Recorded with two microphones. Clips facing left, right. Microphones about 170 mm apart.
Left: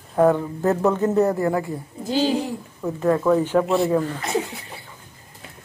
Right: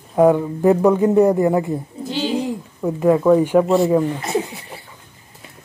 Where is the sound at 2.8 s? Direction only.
15° right (ahead or behind).